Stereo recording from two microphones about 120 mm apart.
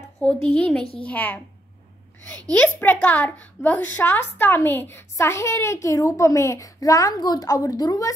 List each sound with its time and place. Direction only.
0.6 s a child's voice: 5° left (ahead or behind)
2.5 s a woman's voice: 15° left (ahead or behind); by 8.1 s 35° left (ahead or behind)